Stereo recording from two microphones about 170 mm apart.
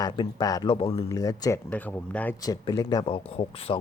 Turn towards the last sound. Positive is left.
turn(degrees=35)  # may be behind; listen again after turning